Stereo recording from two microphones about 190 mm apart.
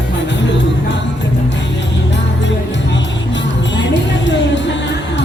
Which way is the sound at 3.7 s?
70° left (ahead or behind).